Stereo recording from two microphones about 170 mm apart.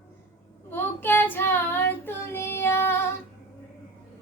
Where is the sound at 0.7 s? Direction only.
10° left (ahead or behind).